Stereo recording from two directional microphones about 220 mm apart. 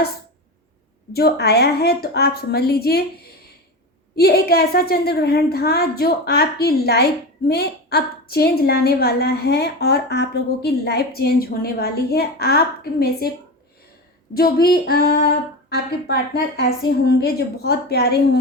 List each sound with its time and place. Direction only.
1.1 s a woman's voice: 45° left (ahead or behind)
4.1 s a woman's voice: 45° left (ahead or behind)
14.3 s a woman's voice: 45° left (ahead or behind)